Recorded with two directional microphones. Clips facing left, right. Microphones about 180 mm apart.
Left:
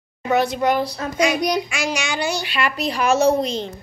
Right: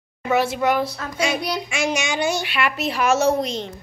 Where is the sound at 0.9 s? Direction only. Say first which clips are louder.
Left 5 dB; 20° left (ahead or behind).